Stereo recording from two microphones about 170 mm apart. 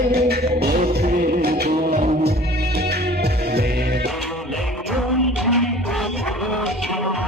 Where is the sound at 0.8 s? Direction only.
50° right (ahead or behind).